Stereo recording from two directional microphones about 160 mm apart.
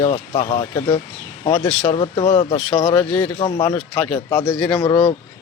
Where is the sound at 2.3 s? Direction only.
40° left (ahead or behind).